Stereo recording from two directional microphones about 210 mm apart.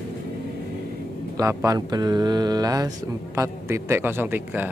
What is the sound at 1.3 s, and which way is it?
A man's voice, 15° right (ahead or behind).